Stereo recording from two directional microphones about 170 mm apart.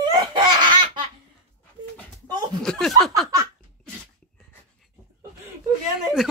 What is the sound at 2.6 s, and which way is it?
Chuckle, 5° left (ahead or behind).